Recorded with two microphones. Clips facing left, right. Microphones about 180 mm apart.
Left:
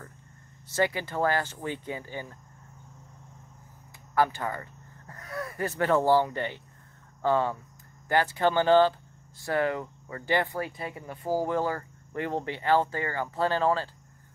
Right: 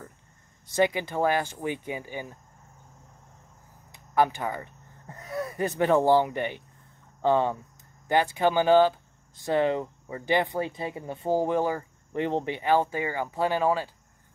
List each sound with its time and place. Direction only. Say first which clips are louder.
0.7 s speech: right 3 dB; 15° right (ahead or behind)
4.1 s speech: right 2 dB; 15° right (ahead or behind)